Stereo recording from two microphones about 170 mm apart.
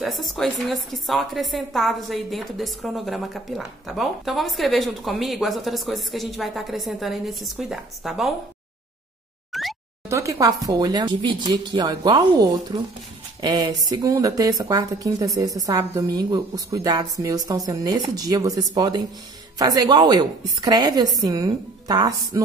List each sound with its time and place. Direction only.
0.0 s a woman's voice: centre (ahead or behind)
9.5 s plop: centre (ahead or behind)
10.0 s a woman's voice: 15° right (ahead or behind)